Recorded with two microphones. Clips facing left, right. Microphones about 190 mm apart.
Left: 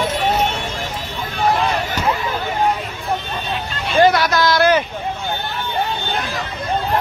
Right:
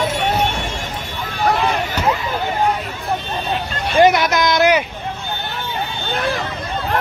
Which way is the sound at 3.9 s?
20° right (ahead or behind).